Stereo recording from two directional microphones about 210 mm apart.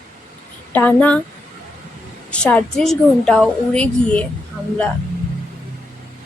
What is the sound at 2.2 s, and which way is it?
A woman's voice, 5° left (ahead or behind).